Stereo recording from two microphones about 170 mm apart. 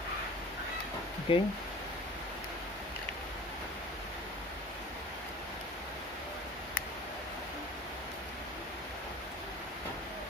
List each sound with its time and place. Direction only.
1.3 s speech: 35° left (ahead or behind)